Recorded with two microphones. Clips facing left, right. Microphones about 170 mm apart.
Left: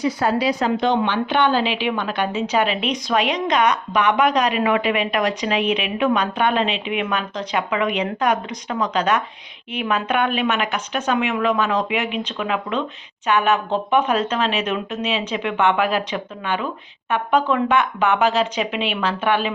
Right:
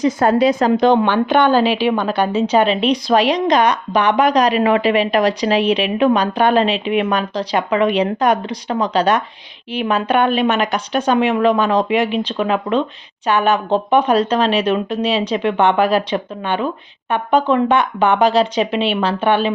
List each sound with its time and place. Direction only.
0.0 s a woman's voice: 45° right (ahead or behind); by 19.5 s 30° right (ahead or behind)